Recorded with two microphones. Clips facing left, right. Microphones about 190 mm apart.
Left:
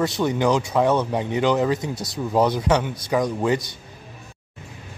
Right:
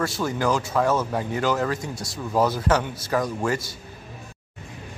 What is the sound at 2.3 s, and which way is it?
A man's voice, 20° left (ahead or behind).